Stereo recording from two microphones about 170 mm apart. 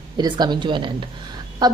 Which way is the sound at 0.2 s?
25° right (ahead or behind).